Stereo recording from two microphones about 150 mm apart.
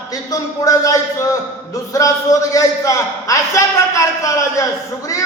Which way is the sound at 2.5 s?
20° left (ahead or behind).